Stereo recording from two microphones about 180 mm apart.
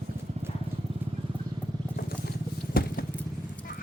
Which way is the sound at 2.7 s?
55° left (ahead or behind).